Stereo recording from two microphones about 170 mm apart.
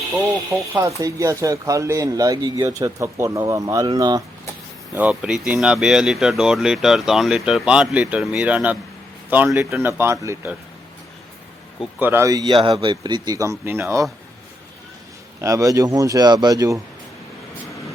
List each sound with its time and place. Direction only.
0.7 s speech: 15° right (ahead or behind)
4.9 s speech: 5° right (ahead or behind)
11.9 s speech: 10° right (ahead or behind)
15.4 s speech: 20° right (ahead or behind)